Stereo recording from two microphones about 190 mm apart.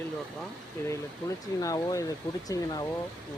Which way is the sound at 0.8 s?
15° left (ahead or behind).